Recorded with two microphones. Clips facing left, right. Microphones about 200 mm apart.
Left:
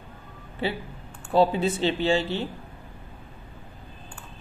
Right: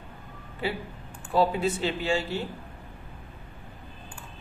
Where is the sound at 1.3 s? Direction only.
25° left (ahead or behind).